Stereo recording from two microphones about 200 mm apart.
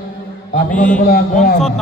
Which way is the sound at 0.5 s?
40° left (ahead or behind).